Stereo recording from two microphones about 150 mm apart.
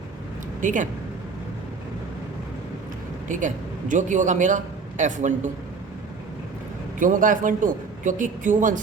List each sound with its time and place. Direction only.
0.6 s a man's voice: 60° right (ahead or behind)
3.2 s a man's voice: 60° right (ahead or behind)
7.0 s a man's voice: 60° right (ahead or behind)